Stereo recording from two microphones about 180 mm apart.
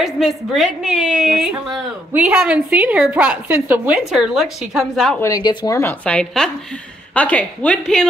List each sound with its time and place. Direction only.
0.0 s a woman's voice: centre (ahead or behind)
5.2 s speech: 20° left (ahead or behind)
5.8 s a woman's voice: 10° left (ahead or behind)